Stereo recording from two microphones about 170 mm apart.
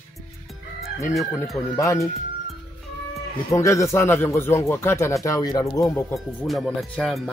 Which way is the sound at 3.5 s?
15° left (ahead or behind).